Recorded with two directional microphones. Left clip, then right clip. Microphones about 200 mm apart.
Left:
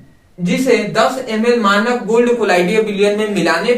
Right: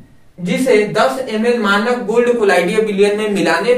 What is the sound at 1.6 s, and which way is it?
A man's voice, 10° right (ahead or behind).